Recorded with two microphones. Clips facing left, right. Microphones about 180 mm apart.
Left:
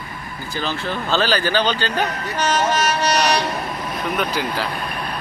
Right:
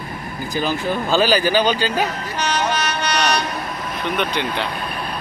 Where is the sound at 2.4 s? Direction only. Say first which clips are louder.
Left 2 dB; 45° left (ahead or behind).